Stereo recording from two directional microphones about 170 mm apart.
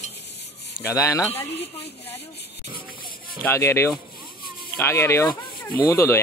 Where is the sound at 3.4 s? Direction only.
15° left (ahead or behind).